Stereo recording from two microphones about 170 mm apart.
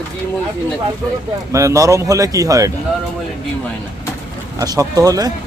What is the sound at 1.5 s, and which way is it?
A man's voice, 20° right (ahead or behind).